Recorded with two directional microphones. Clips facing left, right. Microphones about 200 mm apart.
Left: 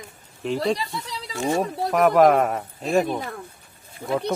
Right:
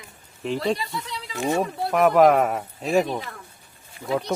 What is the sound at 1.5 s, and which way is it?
Speech, 35° left (ahead or behind).